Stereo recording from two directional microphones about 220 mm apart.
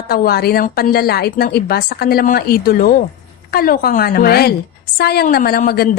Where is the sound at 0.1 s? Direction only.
45° left (ahead or behind).